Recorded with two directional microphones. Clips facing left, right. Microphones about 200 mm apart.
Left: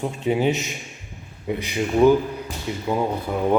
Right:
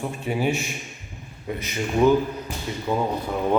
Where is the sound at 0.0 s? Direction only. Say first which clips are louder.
Left 4 dB; 20° left (ahead or behind).